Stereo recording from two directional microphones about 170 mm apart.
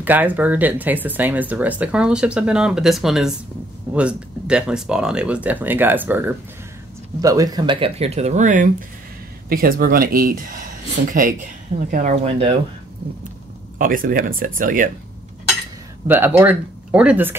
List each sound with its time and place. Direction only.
0.0 s speech: 10° right (ahead or behind); by 8.6 s 45° right (ahead or behind)
9.5 s speech: 60° right (ahead or behind)
12.3 s speech: 35° right (ahead or behind)
13.7 s speech: 55° right (ahead or behind)
16.1 s speech: 10° right (ahead or behind)